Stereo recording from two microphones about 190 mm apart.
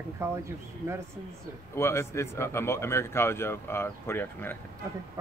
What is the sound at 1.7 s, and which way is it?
Speech, 15° left (ahead or behind).